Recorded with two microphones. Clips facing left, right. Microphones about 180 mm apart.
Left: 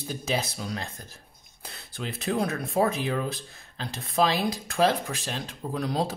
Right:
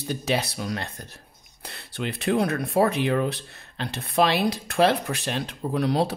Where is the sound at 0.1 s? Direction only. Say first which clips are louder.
Right 4 dB; 70° right (ahead or behind).